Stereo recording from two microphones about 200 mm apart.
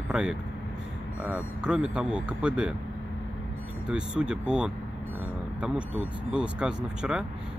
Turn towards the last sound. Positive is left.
turn(degrees=-5)  # may be behind; listen again after turning